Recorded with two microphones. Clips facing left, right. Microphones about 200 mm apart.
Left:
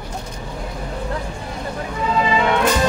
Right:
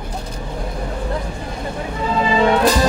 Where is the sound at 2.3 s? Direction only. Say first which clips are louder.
Right 5 dB; 35° right (ahead or behind).